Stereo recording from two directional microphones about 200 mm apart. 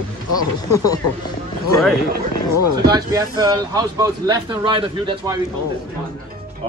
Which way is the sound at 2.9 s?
20° right (ahead or behind).